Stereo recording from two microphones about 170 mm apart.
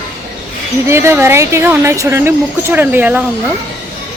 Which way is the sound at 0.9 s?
15° right (ahead or behind).